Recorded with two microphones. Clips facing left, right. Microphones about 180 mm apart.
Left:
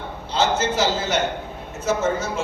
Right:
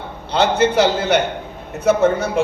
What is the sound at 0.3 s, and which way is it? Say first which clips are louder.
A man's voice: right 5 dB; 60° right (ahead or behind).